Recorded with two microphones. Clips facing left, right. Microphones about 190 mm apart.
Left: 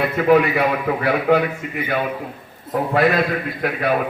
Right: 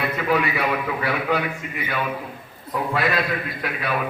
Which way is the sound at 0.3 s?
50° left (ahead or behind).